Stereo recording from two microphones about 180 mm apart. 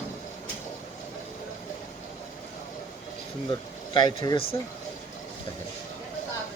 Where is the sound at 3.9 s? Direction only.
25° left (ahead or behind).